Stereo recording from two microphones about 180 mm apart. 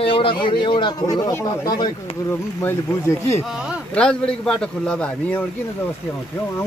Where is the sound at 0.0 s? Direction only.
30° left (ahead or behind).